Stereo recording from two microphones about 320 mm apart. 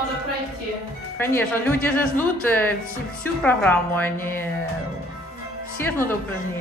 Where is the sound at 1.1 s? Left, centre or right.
Centre.